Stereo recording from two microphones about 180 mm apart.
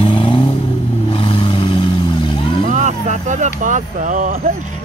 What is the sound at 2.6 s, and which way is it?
Vehicle, 40° right (ahead or behind).